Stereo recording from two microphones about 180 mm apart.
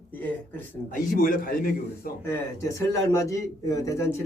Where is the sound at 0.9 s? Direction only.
50° left (ahead or behind).